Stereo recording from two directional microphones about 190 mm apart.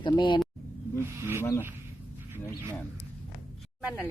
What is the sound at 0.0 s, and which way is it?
Speech, 25° left (ahead or behind).